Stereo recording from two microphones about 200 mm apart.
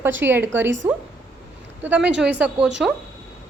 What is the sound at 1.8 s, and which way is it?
Speech, 5° right (ahead or behind).